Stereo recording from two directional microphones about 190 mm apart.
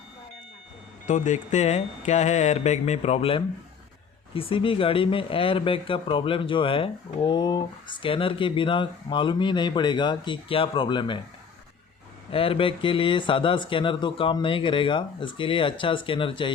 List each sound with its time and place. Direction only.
1.0 s speech: 40° left (ahead or behind)
12.3 s speech: 30° left (ahead or behind)